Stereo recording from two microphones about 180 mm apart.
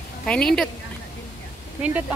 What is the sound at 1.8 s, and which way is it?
Speech, 10° right (ahead or behind).